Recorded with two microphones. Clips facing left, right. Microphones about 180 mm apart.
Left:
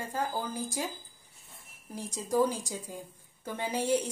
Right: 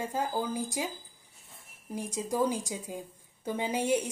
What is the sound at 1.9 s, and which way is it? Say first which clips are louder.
A woman's voice: left 2 dB; 15° right (ahead or behind).